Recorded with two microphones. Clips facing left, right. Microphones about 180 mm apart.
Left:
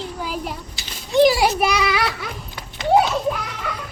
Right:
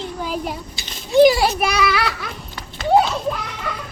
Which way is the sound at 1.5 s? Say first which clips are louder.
Even; 15° left (ahead or behind).